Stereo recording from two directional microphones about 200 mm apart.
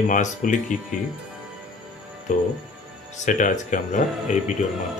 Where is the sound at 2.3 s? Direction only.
40° left (ahead or behind).